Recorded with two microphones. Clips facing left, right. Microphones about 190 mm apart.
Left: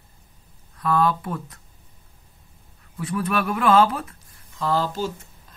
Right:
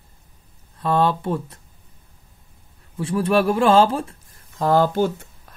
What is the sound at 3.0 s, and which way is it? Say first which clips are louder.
Speech: right 6 dB; 30° right (ahead or behind).